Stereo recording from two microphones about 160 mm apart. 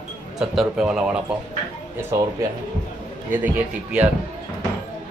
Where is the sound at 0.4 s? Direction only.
Centre (ahead or behind).